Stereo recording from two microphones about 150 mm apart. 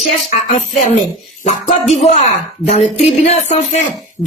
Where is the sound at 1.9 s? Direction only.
45° left (ahead or behind).